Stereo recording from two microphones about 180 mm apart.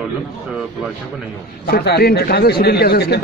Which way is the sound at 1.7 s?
60° left (ahead or behind).